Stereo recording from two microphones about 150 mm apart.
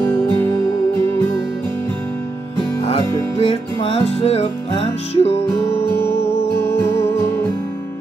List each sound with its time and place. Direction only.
2.8 s music: 40° left (ahead or behind)
5.6 s music: 15° left (ahead or behind)